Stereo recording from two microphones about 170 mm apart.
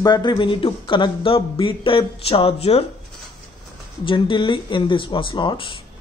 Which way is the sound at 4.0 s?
30° left (ahead or behind).